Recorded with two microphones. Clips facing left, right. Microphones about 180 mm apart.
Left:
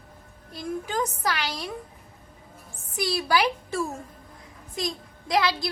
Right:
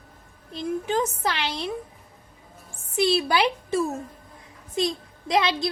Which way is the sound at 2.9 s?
25° right (ahead or behind).